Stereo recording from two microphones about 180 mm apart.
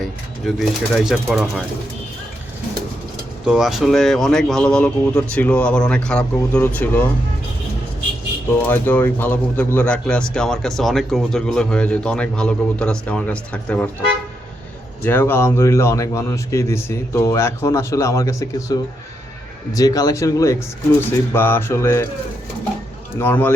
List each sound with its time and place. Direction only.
0.0 s speech: centre (ahead or behind)
3.4 s speech: 5° right (ahead or behind)
8.6 s speech: 10° left (ahead or behind)
15.0 s speech: 10° left (ahead or behind)
23.1 s speech: 10° left (ahead or behind)